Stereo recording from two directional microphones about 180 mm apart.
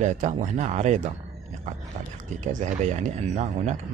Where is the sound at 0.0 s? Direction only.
40° right (ahead or behind).